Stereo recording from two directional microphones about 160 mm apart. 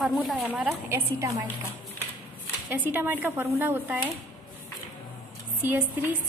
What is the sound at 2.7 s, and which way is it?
A woman's voice, 10° right (ahead or behind).